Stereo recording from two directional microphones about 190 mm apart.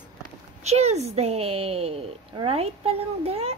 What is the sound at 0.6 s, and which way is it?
A woman's voice, 35° right (ahead or behind).